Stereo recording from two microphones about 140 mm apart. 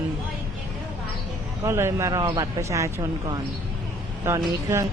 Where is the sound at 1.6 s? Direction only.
20° right (ahead or behind).